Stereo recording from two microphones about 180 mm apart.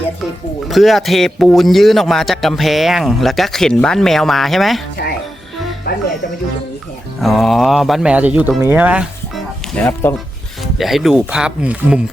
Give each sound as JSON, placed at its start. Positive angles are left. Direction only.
{"t": 0.7, "sound": "speech", "side_deg": 0}
{"t": 5.0, "sound": "speech", "side_deg": 60}
{"t": 5.9, "sound": "music", "side_deg": 50}
{"t": 7.2, "sound": "speech", "side_deg": 0}
{"t": 9.7, "sound": "speech", "side_deg": 10}
{"t": 10.6, "sound": "speech", "side_deg": 0}